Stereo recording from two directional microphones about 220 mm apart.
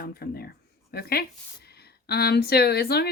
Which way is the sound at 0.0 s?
45° left (ahead or behind).